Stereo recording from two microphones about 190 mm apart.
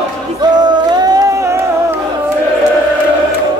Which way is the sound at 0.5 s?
20° right (ahead or behind).